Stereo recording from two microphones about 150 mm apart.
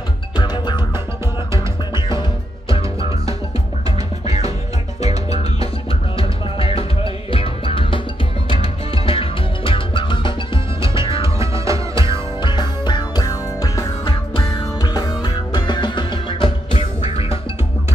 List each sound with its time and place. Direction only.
0.4 s music: 30° left (ahead or behind)
2.0 s music: 30° left (ahead or behind)
5.3 s music: 45° left (ahead or behind)
11.2 s music: 20° right (ahead or behind)
12.1 s music: 30° left (ahead or behind)